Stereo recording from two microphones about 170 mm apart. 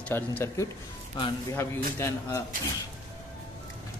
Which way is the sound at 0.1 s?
15° left (ahead or behind).